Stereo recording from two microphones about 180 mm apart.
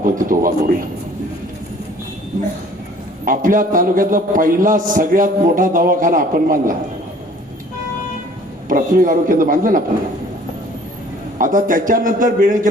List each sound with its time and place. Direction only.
0.0 s a man's voice: 50° right (ahead or behind)
3.2 s a man's voice: 50° right (ahead or behind)
8.7 s a man's voice: 50° right (ahead or behind)
11.3 s a man's voice: 45° right (ahead or behind)